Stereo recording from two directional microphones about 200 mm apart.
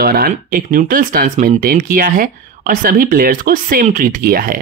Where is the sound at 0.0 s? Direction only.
50° right (ahead or behind).